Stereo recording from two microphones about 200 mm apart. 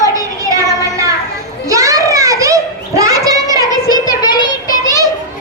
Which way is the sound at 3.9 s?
20° left (ahead or behind).